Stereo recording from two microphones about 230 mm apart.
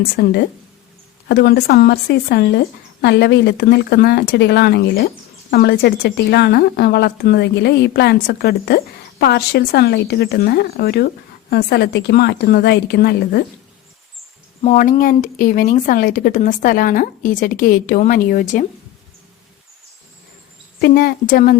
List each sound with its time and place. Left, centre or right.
0.2 s speech: left
14.6 s speech: left
20.8 s speech: left